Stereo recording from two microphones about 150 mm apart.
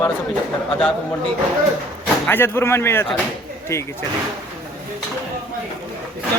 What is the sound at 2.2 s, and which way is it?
Speech, 15° left (ahead or behind).